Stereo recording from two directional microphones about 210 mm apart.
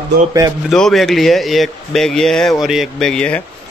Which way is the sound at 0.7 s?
Centre (ahead or behind).